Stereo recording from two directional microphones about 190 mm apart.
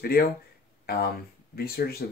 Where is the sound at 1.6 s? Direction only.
55° left (ahead or behind).